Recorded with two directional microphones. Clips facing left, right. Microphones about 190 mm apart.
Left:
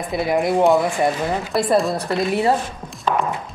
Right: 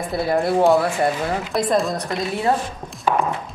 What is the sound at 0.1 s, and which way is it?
Speech, 20° left (ahead or behind).